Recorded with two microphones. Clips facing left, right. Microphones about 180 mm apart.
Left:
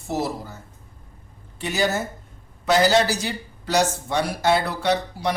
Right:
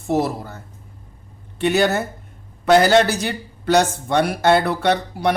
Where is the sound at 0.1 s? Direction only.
55° right (ahead or behind).